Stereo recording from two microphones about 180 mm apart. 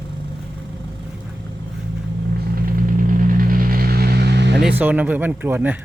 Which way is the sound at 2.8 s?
50° right (ahead or behind).